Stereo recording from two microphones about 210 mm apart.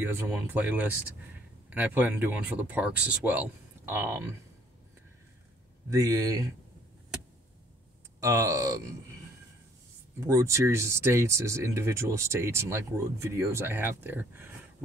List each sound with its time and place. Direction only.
0.0 s speech: 10° right (ahead or behind)
5.9 s speech: 15° right (ahead or behind)
8.2 s speech: 15° right (ahead or behind)
10.2 s speech: 15° right (ahead or behind)